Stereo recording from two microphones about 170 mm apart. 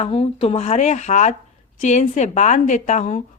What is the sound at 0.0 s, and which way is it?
A woman's voice, 35° left (ahead or behind).